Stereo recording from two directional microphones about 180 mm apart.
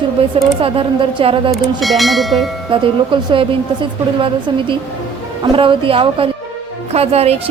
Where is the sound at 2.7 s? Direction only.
30° right (ahead or behind).